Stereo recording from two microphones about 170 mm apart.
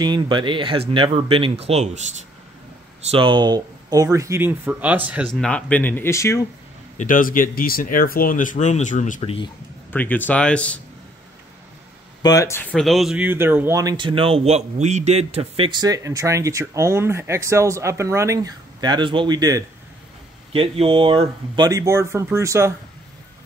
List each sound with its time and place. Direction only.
0.0 s speech: 25° right (ahead or behind)
3.1 s speech: 30° right (ahead or behind); by 5.3 s 10° right (ahead or behind)
5.3 s speech: 5° left (ahead or behind)
7.0 s speech: 50° left (ahead or behind)
9.2 s speech: 35° left (ahead or behind)
9.9 s speech: 10° left (ahead or behind)
12.2 s speech: 20° left (ahead or behind)
12.7 s speech: centre (ahead or behind); by 15.7 s 35° right (ahead or behind)
15.8 s speech: 20° right (ahead or behind)
21.6 s speech: 20° right (ahead or behind)